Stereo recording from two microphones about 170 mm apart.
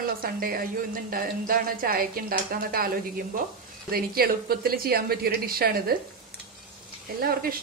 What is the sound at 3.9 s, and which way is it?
Speech, 60° right (ahead or behind).